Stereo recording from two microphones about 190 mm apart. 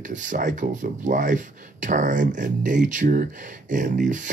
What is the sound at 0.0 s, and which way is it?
Speech, 40° right (ahead or behind).